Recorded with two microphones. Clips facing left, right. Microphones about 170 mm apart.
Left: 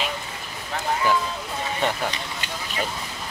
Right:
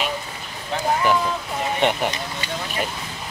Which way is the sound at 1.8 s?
25° right (ahead or behind).